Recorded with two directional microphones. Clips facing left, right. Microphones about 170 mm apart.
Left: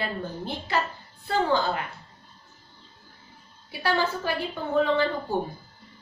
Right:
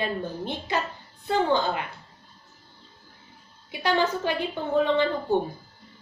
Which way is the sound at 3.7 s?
20° right (ahead or behind).